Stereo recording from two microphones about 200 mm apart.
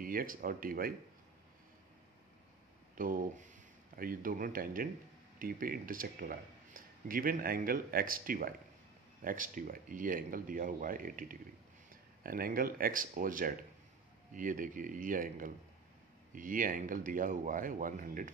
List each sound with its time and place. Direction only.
0.0 s speech: 45° right (ahead or behind)
3.0 s speech: 45° right (ahead or behind)